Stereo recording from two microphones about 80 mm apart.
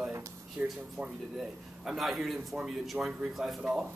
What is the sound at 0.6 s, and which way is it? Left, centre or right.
A man's voice, centre.